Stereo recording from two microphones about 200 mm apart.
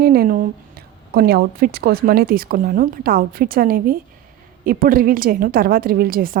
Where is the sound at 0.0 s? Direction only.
50° right (ahead or behind).